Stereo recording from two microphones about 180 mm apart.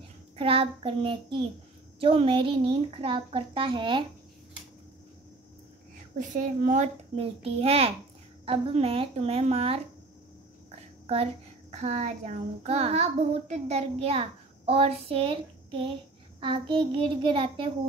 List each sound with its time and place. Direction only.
0.4 s a child's voice: 30° right (ahead or behind)
6.1 s a child's voice: 45° right (ahead or behind)
11.7 s a child's voice: 40° right (ahead or behind)
16.3 s a woman's voice: 25° right (ahead or behind)